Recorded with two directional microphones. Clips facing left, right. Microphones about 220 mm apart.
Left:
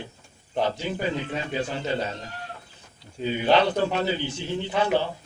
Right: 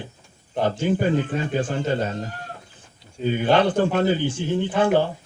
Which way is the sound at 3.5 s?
50° right (ahead or behind).